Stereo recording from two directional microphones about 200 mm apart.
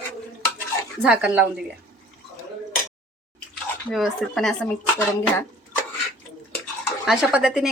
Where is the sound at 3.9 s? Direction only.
Centre (ahead or behind).